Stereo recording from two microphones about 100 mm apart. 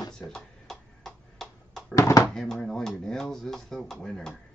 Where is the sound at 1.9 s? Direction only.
35° left (ahead or behind).